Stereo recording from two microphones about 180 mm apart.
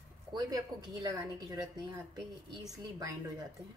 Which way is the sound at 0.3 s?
20° right (ahead or behind).